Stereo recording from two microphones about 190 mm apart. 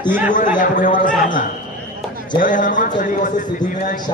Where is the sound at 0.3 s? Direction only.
40° left (ahead or behind).